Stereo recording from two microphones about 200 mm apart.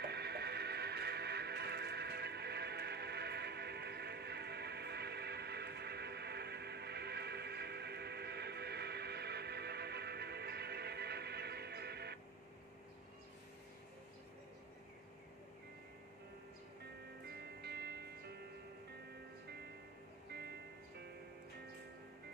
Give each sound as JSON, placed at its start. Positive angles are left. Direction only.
{"t": 0.0, "sound": "music", "side_deg": -55}
{"t": 17.3, "sound": "music", "side_deg": -55}